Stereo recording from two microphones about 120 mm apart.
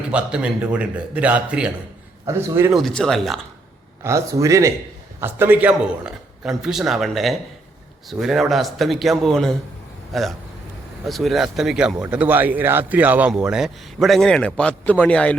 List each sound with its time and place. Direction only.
0.1 s a man's voice: 10° right (ahead or behind)
2.2 s a man's voice: 20° right (ahead or behind)
2.7 s speech: 5° left (ahead or behind)
4.0 s a man's voice: 25° right (ahead or behind); by 15.4 s 10° left (ahead or behind)